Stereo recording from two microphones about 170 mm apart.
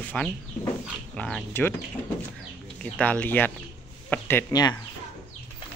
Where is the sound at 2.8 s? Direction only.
10° left (ahead or behind).